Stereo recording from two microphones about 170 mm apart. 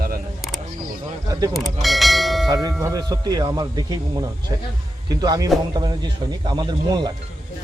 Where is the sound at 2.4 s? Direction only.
25° right (ahead or behind).